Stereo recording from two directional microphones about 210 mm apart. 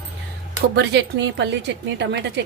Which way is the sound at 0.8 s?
55° right (ahead or behind).